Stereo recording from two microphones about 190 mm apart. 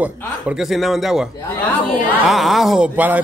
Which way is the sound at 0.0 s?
5° right (ahead or behind).